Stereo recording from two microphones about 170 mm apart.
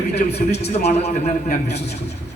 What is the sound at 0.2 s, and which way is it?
A man's voice, 45° left (ahead or behind).